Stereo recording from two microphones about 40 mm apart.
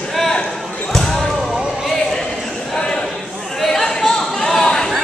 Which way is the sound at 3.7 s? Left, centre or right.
Centre.